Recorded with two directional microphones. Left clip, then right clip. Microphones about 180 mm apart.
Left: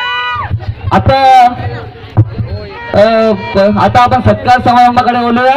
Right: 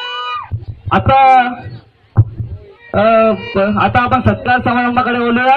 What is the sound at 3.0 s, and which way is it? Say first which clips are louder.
Music: left 2 dB; 45° left (ahead or behind).